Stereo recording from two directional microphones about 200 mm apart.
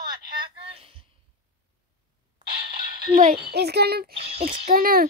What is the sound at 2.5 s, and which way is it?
Music, 50° right (ahead or behind).